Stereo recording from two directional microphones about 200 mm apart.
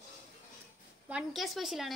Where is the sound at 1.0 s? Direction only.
5° right (ahead or behind).